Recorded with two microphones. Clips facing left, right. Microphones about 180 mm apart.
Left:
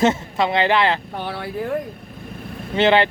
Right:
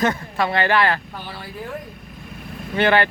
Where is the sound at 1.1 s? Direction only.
65° left (ahead or behind).